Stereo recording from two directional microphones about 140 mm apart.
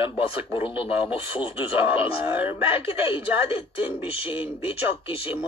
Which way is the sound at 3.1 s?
40° left (ahead or behind).